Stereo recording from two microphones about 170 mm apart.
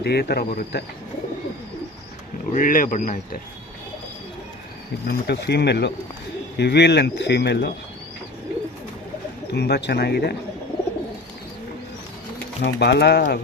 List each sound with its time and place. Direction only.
0.0 s speech: 70° left (ahead or behind)
2.5 s speech: 55° left (ahead or behind)
5.0 s speech: 80° left
9.5 s speech: 75° left (ahead or behind)
12.6 s speech: 80° left